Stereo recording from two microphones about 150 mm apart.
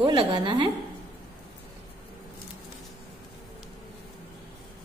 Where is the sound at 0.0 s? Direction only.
30° right (ahead or behind).